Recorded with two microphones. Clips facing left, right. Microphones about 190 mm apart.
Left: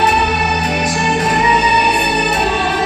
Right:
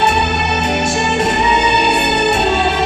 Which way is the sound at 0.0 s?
25° right (ahead or behind).